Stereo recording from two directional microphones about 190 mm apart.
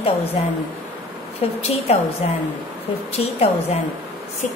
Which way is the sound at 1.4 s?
30° left (ahead or behind).